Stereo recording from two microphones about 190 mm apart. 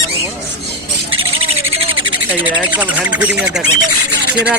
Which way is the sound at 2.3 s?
10° right (ahead or behind).